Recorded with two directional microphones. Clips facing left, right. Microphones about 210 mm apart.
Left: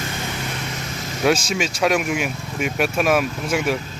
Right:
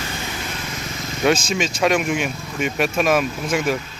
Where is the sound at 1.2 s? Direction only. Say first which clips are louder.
Right 1 dB; 5° left (ahead or behind).